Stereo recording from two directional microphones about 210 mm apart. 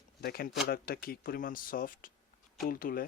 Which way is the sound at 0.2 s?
45° left (ahead or behind).